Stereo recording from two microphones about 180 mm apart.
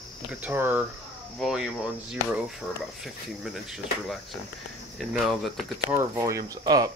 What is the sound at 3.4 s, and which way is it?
Speech, centre (ahead or behind).